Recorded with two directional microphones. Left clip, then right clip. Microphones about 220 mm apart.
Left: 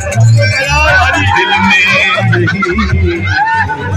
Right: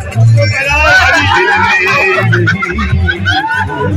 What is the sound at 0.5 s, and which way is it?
Music, centre (ahead or behind).